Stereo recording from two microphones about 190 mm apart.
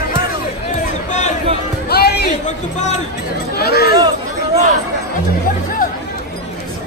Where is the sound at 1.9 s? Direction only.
60° left (ahead or behind).